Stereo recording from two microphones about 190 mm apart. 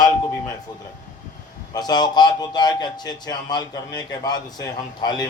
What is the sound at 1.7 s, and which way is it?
A man's voice, 20° left (ahead or behind).